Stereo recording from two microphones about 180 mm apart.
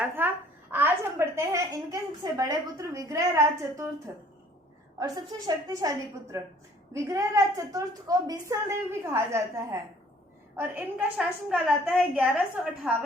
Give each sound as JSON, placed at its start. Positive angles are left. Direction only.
{"t": 0.0, "sound": "a woman's voice", "side_deg": -10}